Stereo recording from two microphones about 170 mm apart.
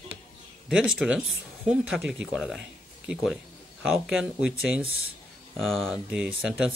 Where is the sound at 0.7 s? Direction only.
5° right (ahead or behind).